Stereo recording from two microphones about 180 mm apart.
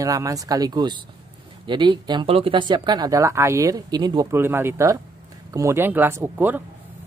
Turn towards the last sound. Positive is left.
turn(degrees=-10)  # may be behind; listen again after turning